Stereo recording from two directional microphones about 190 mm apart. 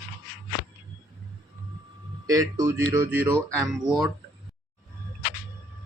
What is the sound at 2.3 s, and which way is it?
Speech, 20° right (ahead or behind).